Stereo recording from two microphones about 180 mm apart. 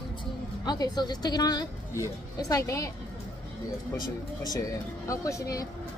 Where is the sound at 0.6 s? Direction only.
20° left (ahead or behind).